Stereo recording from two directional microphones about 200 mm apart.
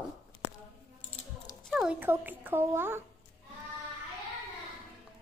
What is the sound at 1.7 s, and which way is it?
A child's voice, 10° right (ahead or behind).